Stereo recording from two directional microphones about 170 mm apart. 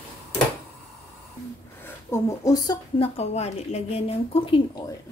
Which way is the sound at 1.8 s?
20° left (ahead or behind).